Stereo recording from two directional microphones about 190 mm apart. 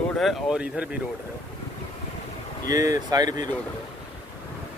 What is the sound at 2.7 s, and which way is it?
Speech, 20° right (ahead or behind).